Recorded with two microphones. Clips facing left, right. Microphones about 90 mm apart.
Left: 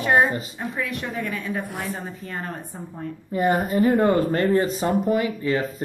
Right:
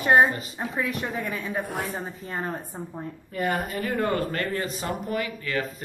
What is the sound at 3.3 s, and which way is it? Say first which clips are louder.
Speech: left 6 dB; 25° left (ahead or behind).